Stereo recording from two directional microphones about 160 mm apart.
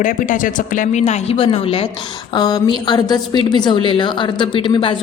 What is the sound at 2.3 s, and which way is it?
Speech, 25° left (ahead or behind).